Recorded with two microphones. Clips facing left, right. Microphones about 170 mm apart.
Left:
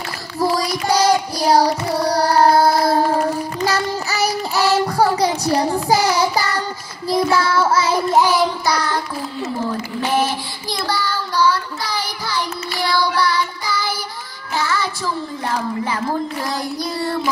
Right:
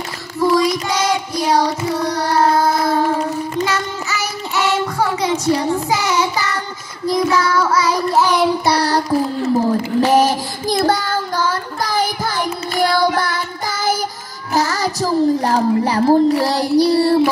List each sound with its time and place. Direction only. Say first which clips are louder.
0.4 s child singing: right 4 dB; 35° left (ahead or behind)
8.6 s child singing: right 5 dB; 35° right (ahead or behind)
14.5 s music: right 4 dB; 40° right (ahead or behind)
15.8 s child singing: right 9 dB; 35° right (ahead or behind)